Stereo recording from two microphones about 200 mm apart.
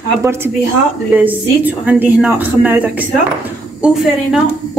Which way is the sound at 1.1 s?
10° right (ahead or behind).